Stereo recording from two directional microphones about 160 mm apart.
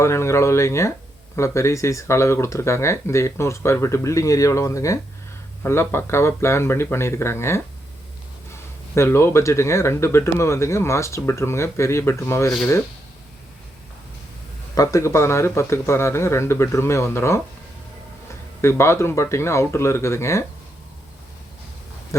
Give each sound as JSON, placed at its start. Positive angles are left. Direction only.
{"t": 0.0, "sound": "speech", "side_deg": 15}
{"t": 9.0, "sound": "speech", "side_deg": 15}
{"t": 14.8, "sound": "speech", "side_deg": 20}
{"t": 18.6, "sound": "speech", "side_deg": 15}
{"t": 22.1, "sound": "speech", "side_deg": 20}